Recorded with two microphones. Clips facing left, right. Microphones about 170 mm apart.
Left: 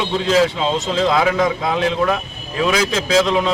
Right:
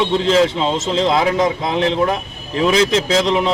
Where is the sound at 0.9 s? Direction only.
25° right (ahead or behind).